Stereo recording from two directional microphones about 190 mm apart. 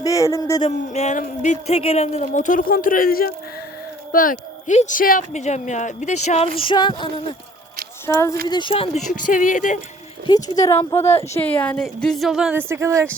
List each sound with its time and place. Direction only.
0.0 s speech: 15° left (ahead or behind)
0.6 s a woman's voice: 35° left (ahead or behind)
10.5 s a woman's voice: 20° left (ahead or behind); by 13.1 s 15° right (ahead or behind)